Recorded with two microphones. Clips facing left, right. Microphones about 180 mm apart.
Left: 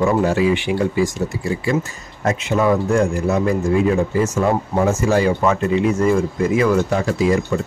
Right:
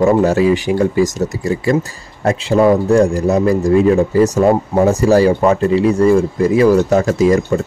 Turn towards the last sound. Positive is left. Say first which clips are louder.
# right 6 dB
turn(degrees=-45)  # may be behind; listen again after turning